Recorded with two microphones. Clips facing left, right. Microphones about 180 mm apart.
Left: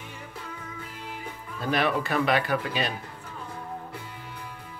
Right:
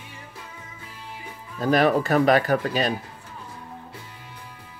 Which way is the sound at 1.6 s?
40° right (ahead or behind).